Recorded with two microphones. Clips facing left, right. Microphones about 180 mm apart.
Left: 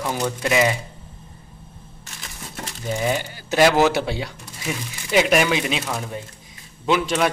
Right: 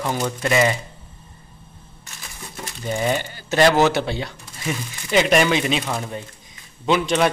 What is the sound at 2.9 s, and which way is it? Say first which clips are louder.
Speech: right 1 dB; 5° left (ahead or behind).